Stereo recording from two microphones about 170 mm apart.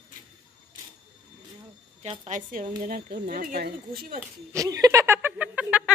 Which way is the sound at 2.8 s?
60° right (ahead or behind).